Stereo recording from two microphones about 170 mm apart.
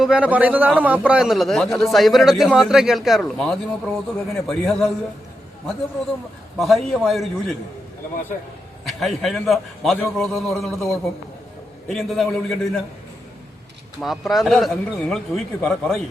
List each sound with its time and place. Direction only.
0.0 s a man's voice: 5° right (ahead or behind)
6.6 s a man's voice: centre (ahead or behind)
8.8 s a man's voice: centre (ahead or behind)
14.0 s a man's voice: centre (ahead or behind)